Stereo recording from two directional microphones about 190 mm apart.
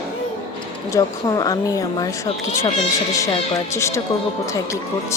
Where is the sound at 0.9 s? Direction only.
15° left (ahead or behind).